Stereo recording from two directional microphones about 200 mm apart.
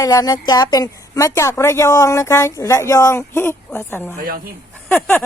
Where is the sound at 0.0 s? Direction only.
15° left (ahead or behind).